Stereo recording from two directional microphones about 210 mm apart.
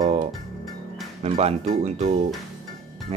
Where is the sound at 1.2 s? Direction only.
30° right (ahead or behind).